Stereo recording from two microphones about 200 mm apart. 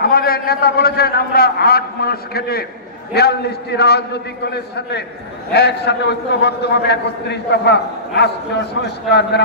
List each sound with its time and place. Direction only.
0.0 s a man's voice: 50° left (ahead or behind)